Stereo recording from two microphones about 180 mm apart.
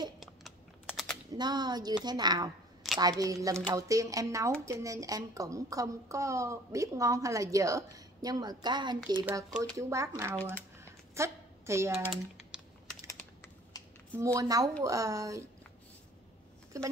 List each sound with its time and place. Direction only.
0.2 s typing: centre (ahead or behind)
1.3 s speech: 20° right (ahead or behind)
10.8 s a sound: 15° right (ahead or behind)
12.1 s typing: 5° right (ahead or behind)
14.1 s speech: 20° right (ahead or behind)
16.7 s speech: 15° right (ahead or behind)